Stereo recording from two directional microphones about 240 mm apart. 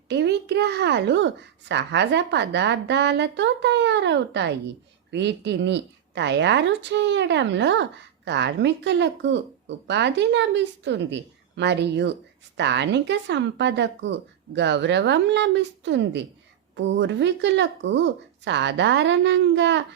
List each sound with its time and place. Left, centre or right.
0.1 s a woman's voice: right